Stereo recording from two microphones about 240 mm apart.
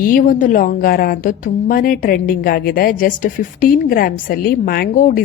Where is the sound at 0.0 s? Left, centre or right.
Left.